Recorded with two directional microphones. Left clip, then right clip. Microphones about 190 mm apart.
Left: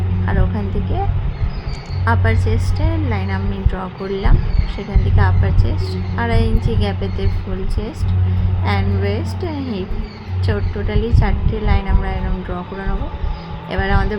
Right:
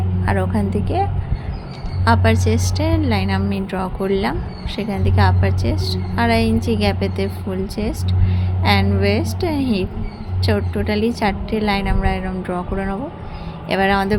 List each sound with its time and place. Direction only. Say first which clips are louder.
0.3 s a woman's voice: right 4 dB; 15° right (ahead or behind)
2.0 s a woman's voice: right 3 dB; 15° right (ahead or behind)
8.6 s a woman's voice: right 4 dB; 15° right (ahead or behind)
13.7 s a woman's voice: right 4 dB; 15° right (ahead or behind)